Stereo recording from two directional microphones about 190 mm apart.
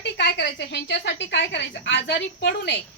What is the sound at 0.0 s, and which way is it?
A woman's voice, 65° left (ahead or behind).